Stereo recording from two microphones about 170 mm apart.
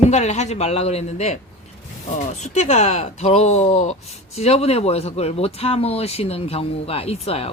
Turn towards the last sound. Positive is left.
turn(degrees=35)  # may be behind; listen again after turning